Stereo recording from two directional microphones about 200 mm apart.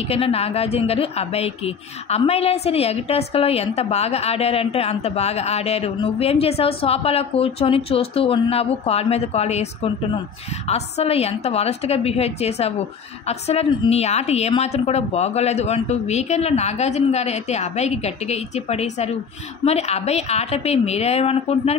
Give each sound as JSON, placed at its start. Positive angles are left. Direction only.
{"t": 0.1, "sound": "a woman's voice", "side_deg": 30}